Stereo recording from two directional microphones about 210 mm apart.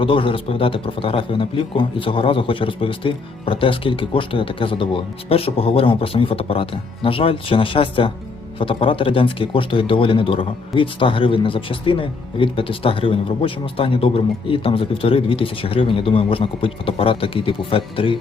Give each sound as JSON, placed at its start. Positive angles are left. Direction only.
{"t": 0.0, "sound": "a man's voice", "side_deg": 25}